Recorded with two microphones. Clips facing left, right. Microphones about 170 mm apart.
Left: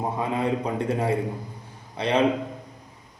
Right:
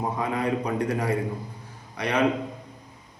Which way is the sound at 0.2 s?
25° left (ahead or behind).